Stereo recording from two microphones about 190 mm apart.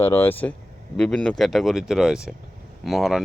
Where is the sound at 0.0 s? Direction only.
15° left (ahead or behind).